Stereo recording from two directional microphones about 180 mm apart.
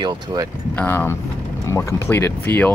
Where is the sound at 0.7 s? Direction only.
15° left (ahead or behind).